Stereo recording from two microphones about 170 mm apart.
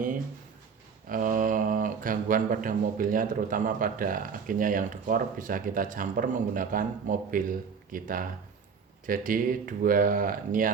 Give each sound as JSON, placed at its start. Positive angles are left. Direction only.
{"t": 1.1, "sound": "speech", "side_deg": -50}